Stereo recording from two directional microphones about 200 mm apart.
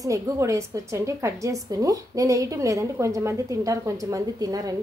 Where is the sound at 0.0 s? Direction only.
15° right (ahead or behind).